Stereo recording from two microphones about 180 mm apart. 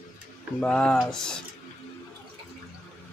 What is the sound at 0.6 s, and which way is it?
Speech, 5° left (ahead or behind).